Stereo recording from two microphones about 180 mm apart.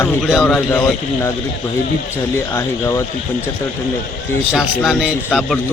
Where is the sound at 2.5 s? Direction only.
15° left (ahead or behind).